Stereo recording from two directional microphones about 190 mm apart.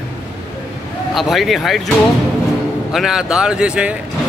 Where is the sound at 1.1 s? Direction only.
Centre (ahead or behind).